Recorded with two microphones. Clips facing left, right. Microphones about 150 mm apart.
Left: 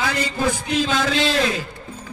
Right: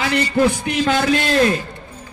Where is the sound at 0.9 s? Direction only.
60° right (ahead or behind).